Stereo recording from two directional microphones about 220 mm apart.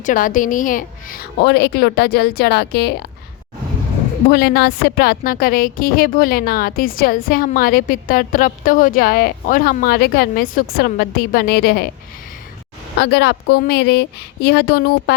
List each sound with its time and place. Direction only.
0.0 s a woman's voice: 35° left (ahead or behind)
4.3 s a woman's voice: 45° left (ahead or behind)
13.0 s a woman's voice: 50° left (ahead or behind)